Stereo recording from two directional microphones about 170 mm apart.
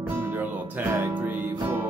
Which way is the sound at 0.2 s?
10° right (ahead or behind).